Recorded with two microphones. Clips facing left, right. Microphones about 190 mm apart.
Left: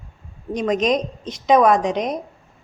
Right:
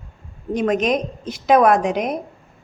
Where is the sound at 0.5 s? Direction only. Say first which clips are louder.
Even; 5° right (ahead or behind).